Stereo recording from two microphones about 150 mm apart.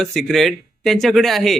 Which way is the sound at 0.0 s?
Centre (ahead or behind).